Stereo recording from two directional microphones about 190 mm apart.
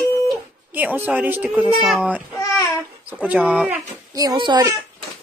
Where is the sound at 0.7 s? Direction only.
10° right (ahead or behind).